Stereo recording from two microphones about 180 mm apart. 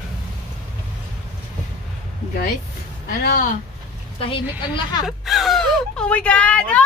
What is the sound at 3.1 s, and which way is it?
Speech, 45° left (ahead or behind).